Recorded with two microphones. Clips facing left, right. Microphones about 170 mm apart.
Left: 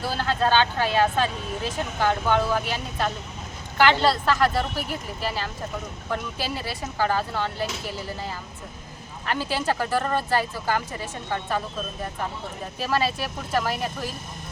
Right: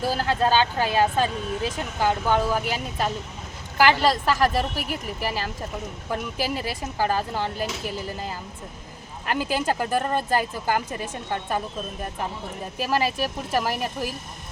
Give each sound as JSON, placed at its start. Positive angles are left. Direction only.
{"t": 0.0, "sound": "vehicle", "side_deg": -40}
{"t": 0.3, "sound": "speech", "side_deg": -10}
{"t": 9.2, "sound": "speech", "side_deg": -15}
{"t": 12.8, "sound": "speech", "side_deg": -15}